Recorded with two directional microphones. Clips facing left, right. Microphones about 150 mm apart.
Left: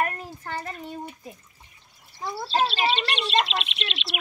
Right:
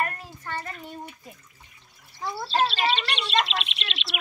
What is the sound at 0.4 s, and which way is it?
Child singing, 35° left (ahead or behind).